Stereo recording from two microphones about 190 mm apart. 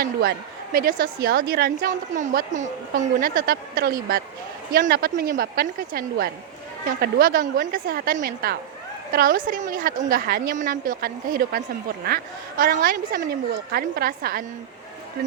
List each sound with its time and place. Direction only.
0.0 s a woman's voice: 55° right (ahead or behind)